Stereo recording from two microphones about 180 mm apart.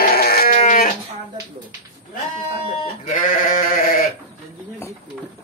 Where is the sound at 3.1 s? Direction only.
45° left (ahead or behind).